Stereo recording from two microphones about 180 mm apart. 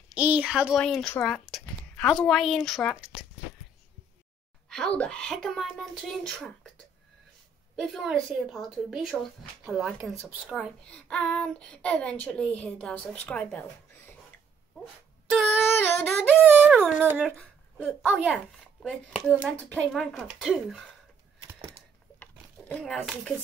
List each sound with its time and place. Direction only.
0.1 s speech: 10° right (ahead or behind)
4.6 s speech: 5° left (ahead or behind)
7.7 s speech: centre (ahead or behind)
15.3 s a sound: centre (ahead or behind)
16.6 s speech: 5° right (ahead or behind)
21.4 s typewriter: 20° right (ahead or behind)
22.2 s a sound: 5° left (ahead or behind)